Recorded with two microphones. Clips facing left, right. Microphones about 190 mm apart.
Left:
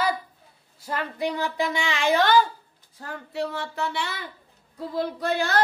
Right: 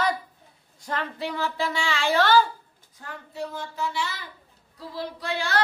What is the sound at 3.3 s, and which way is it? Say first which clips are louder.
Child singing: left 4 dB; 75° left (ahead or behind).